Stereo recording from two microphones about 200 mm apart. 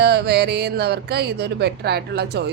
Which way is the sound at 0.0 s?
55° right (ahead or behind).